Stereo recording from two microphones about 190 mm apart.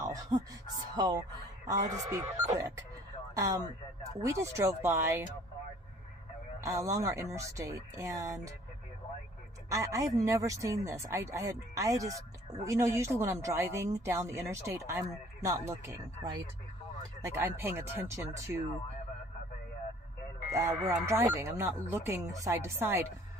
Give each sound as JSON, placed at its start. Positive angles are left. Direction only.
{"t": 0.0, "sound": "music", "side_deg": -20}
{"t": 0.9, "sound": "speech", "side_deg": -25}
{"t": 6.6, "sound": "speech", "side_deg": -15}
{"t": 9.7, "sound": "speech", "side_deg": -15}
{"t": 20.5, "sound": "speech", "side_deg": -15}